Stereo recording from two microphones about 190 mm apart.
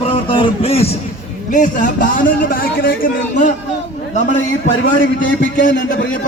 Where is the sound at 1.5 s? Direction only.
45° left (ahead or behind).